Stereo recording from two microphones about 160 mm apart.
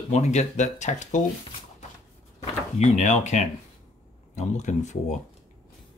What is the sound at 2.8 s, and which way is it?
Speech, 45° left (ahead or behind).